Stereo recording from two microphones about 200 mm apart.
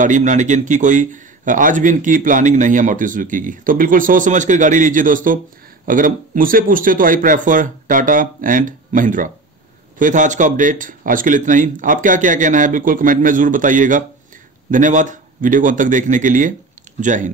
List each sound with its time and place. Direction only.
0.0 s a man's voice: 40° right (ahead or behind)